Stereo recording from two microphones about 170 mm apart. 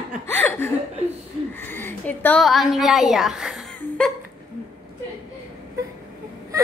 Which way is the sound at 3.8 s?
5° left (ahead or behind).